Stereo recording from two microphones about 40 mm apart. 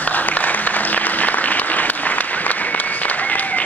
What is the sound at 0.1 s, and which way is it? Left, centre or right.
Applause, left.